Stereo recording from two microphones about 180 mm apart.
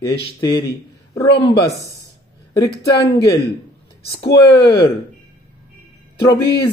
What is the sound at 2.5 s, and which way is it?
Speech, 20° left (ahead or behind).